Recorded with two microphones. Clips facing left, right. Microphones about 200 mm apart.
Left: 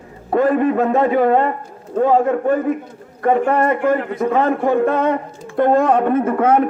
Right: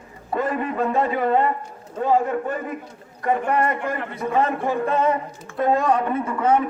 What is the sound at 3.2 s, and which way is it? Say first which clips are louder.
A man's voice: left 6 dB; 60° left (ahead or behind).